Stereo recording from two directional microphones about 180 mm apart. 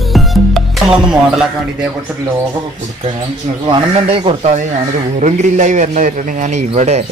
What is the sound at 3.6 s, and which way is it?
A man's voice, 30° right (ahead or behind).